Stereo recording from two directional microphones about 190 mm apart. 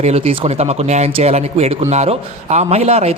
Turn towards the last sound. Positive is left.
turn(degrees=-35)  # may be behind; listen again after turning